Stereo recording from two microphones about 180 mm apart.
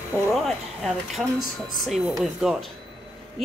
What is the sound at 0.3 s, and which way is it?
Speech, centre (ahead or behind).